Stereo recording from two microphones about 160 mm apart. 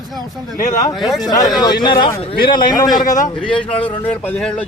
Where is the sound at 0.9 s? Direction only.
Centre (ahead or behind).